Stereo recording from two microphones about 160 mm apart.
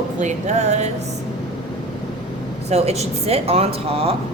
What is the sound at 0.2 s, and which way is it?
Speech, 45° right (ahead or behind).